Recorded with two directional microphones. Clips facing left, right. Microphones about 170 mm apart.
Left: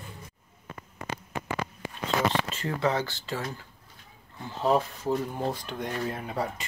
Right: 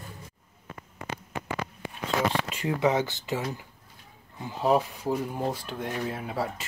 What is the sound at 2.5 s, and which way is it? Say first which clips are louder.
Speech: right 3 dB; 15° right (ahead or behind).